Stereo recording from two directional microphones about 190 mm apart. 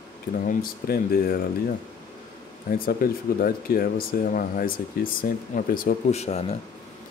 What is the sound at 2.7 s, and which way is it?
Speech, 50° left (ahead or behind).